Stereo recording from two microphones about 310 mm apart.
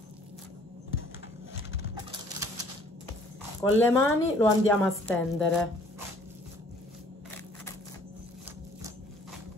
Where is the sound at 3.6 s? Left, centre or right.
Centre.